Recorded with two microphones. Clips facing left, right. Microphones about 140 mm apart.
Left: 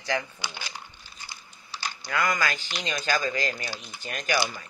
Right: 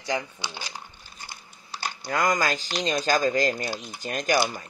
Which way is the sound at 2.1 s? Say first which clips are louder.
Right 3 dB; 40° right (ahead or behind).